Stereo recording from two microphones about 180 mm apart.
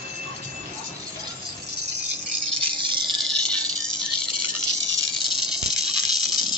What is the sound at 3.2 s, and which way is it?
Cricket, 5° left (ahead or behind).